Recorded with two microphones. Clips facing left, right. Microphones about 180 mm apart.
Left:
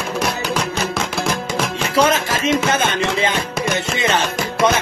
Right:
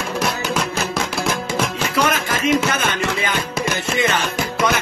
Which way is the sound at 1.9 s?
25° left (ahead or behind).